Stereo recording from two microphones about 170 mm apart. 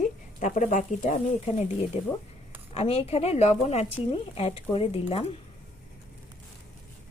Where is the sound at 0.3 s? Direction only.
50° left (ahead or behind).